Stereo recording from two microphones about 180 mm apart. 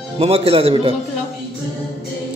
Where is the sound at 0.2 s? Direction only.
35° right (ahead or behind).